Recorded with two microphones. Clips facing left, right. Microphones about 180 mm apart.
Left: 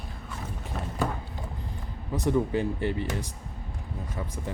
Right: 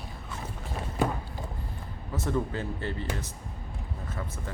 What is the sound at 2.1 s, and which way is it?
Speech, 15° left (ahead or behind).